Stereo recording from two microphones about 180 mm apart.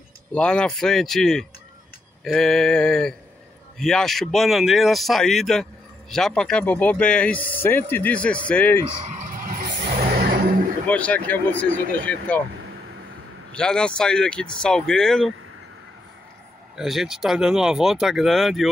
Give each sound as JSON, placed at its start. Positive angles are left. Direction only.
{"t": 0.3, "sound": "speech", "side_deg": 5}
{"t": 8.8, "sound": "vehicle", "side_deg": -35}
{"t": 10.9, "sound": "speech", "side_deg": 10}
{"t": 13.5, "sound": "speech", "side_deg": 5}
{"t": 16.7, "sound": "speech", "side_deg": 0}